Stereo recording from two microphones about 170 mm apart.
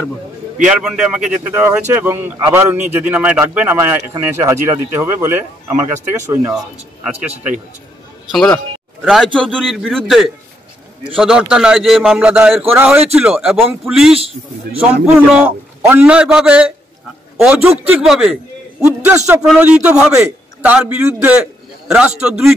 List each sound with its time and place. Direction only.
0.7 s speech: 5° right (ahead or behind)
6.5 s a man's voice: 5° right (ahead or behind)
19.0 s a man's voice: 15° right (ahead or behind)